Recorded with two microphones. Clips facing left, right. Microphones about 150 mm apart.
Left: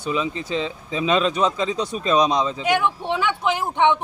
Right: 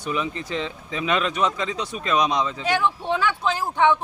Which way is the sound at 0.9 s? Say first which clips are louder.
Left 4 dB; 25° left (ahead or behind).